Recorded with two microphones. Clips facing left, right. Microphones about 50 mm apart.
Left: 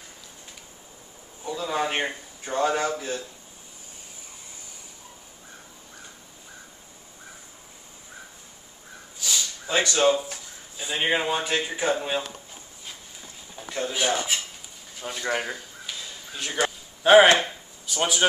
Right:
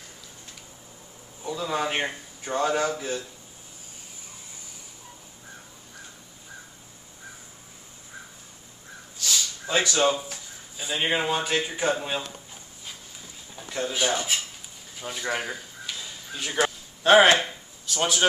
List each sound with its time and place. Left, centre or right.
1.4 s speech: centre
9.2 s speech: centre
13.6 s speech: centre
15.0 s a sound: centre